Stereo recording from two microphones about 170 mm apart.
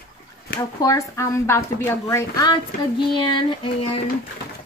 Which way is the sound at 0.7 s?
20° left (ahead or behind).